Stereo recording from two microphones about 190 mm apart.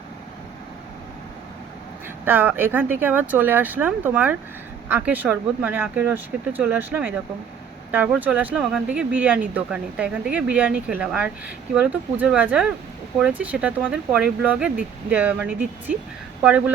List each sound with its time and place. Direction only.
2.2 s speech: 10° right (ahead or behind)